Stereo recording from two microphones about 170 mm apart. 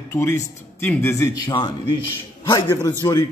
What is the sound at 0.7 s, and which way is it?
Speech, 15° left (ahead or behind).